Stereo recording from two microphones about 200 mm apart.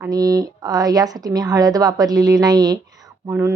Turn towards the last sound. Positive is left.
turn(degrees=-15)  # may be behind; listen again after turning